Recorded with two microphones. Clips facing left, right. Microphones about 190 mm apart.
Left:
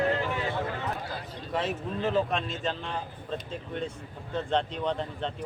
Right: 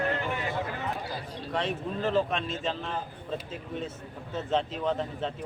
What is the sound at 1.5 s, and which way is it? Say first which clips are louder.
Speech: even; centre (ahead or behind).